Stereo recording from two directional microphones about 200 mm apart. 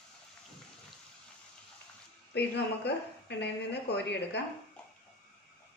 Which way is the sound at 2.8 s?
55° left (ahead or behind).